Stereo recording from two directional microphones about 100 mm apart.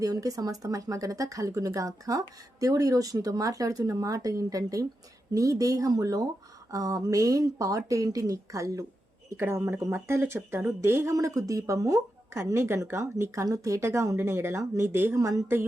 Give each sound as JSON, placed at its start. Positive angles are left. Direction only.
{"t": 0.0, "sound": "speech", "side_deg": -35}